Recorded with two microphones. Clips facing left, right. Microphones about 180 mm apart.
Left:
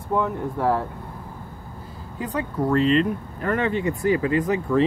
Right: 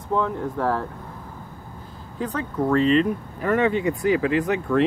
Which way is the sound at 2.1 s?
10° left (ahead or behind).